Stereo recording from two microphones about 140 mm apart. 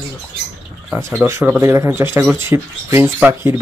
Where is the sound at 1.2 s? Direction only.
15° right (ahead or behind).